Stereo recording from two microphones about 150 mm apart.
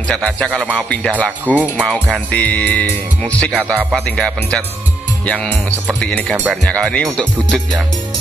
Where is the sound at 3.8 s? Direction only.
5° right (ahead or behind).